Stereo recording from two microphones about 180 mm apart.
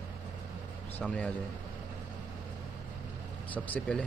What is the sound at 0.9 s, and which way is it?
Speech, 5° left (ahead or behind).